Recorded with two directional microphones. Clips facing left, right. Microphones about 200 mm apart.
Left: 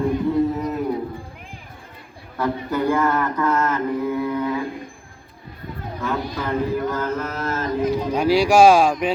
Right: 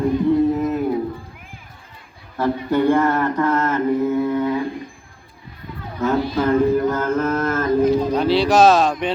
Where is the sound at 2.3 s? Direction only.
30° right (ahead or behind).